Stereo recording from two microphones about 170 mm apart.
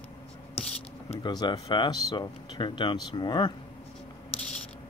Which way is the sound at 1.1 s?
25° left (ahead or behind).